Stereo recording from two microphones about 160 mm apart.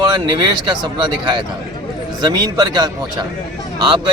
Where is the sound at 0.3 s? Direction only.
30° right (ahead or behind).